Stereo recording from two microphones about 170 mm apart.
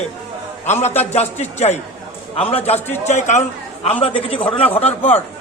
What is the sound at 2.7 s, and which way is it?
Speech, 10° left (ahead or behind).